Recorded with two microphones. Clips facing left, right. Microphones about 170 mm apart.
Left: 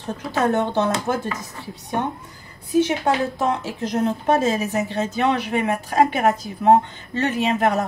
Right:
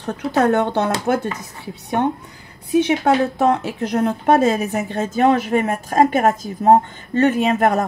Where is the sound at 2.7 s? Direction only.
60° right (ahead or behind).